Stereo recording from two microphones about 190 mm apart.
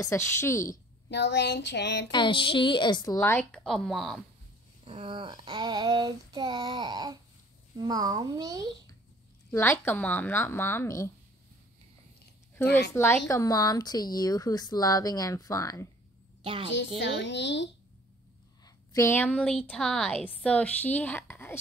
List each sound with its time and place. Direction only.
0.0 s a woman's voice: 15° left (ahead or behind)
0.7 s speech: 60° left (ahead or behind)
2.0 s speech: 25° left (ahead or behind)
3.2 s speech: 10° left (ahead or behind)
4.8 s child singing: 25° right (ahead or behind)
9.5 s a woman's voice: 10° left (ahead or behind)
12.9 s a woman's voice: 10° left (ahead or behind)
16.4 s child singing: 30° right (ahead or behind)
17.0 s a woman's voice: 70° left (ahead or behind)
18.9 s a woman's voice: 10° left (ahead or behind)